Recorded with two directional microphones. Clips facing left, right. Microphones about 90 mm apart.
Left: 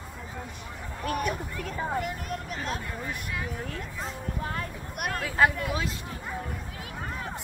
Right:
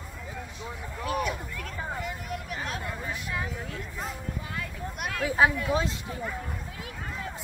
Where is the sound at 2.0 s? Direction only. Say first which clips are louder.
Left 3 dB; 50° left (ahead or behind).